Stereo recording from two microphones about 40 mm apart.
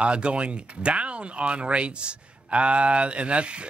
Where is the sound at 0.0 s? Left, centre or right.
Right.